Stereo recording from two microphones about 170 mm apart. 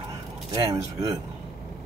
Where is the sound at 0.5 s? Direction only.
20° right (ahead or behind).